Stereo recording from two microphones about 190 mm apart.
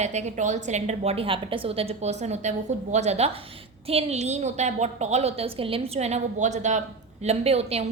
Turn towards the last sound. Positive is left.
turn(degrees=-35)  # may be behind; listen again after turning